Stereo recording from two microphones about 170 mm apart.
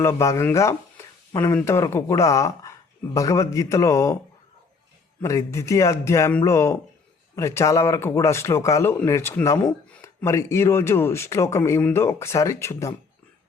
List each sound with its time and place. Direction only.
0.0 s speech: 15° left (ahead or behind)
5.2 s speech: 20° left (ahead or behind)